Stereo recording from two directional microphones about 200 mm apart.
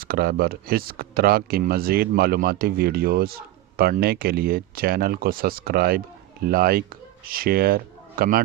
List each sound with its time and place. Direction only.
0.0 s speech: 50° right (ahead or behind)